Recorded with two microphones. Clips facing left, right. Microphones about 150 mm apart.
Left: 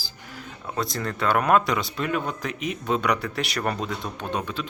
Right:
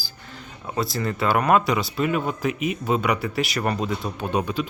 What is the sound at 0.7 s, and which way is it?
Speech, 5° right (ahead or behind).